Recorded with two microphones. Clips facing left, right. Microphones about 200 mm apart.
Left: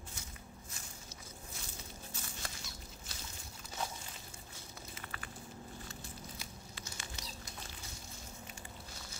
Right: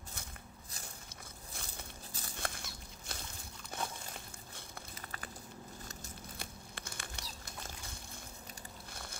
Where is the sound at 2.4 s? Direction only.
55° right (ahead or behind).